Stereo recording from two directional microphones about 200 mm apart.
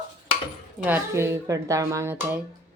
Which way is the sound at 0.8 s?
10° right (ahead or behind).